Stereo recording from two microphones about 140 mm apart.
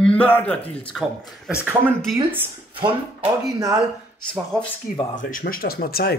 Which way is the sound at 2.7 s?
35° right (ahead or behind).